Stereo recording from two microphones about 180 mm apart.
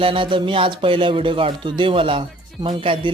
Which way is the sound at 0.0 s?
30° right (ahead or behind).